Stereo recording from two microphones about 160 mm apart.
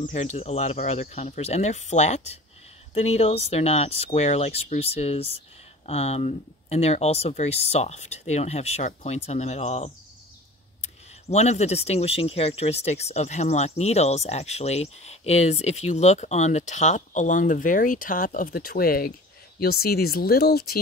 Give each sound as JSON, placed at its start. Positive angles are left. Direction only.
{"t": 0.0, "sound": "speech", "side_deg": 45}